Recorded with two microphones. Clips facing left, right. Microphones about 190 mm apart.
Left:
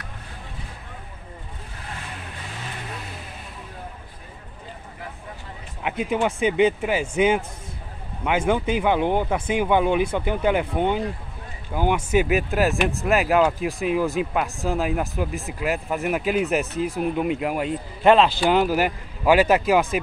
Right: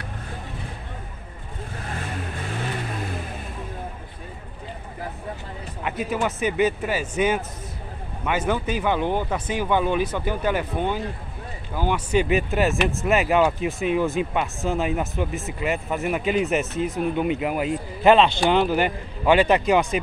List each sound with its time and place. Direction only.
5.9 s speech: 15° left (ahead or behind)